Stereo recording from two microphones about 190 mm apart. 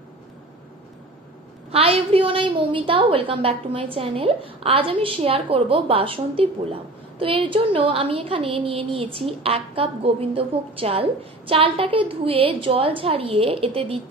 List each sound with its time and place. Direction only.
1.7 s a woman's voice: 30° right (ahead or behind)